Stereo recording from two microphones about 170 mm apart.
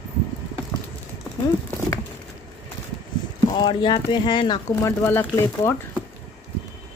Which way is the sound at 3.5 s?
25° left (ahead or behind).